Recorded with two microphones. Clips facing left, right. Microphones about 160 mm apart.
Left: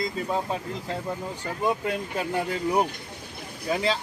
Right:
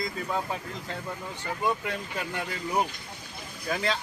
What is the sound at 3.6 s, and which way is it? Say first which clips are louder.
Speech: left 4 dB; 25° left (ahead or behind).